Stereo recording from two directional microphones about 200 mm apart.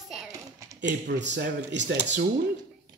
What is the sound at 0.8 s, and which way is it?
Speech, 60° right (ahead or behind).